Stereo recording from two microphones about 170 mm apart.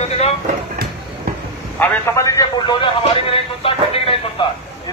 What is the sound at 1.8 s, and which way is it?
A man's voice, 20° left (ahead or behind).